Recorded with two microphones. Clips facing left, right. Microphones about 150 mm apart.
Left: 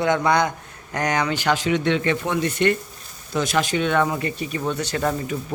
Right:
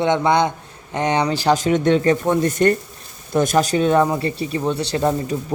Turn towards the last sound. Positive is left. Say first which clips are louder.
# right 4 dB
turn(degrees=-25)  # may be behind; listen again after turning